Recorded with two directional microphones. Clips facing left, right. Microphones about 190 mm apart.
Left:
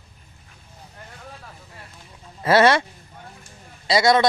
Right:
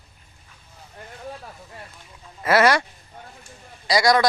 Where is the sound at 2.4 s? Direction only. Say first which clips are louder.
Left 2 dB; 30° left (ahead or behind).